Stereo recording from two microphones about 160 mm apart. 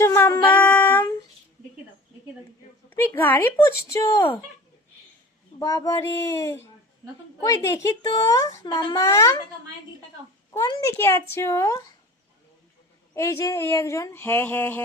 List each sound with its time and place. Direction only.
0.0 s a sound: 15° left (ahead or behind)
3.2 s a child's voice: 10° left (ahead or behind)
5.5 s a child's voice: 20° left (ahead or behind)
10.5 s a child's voice: 20° left (ahead or behind)
13.1 s speech: 20° left (ahead or behind)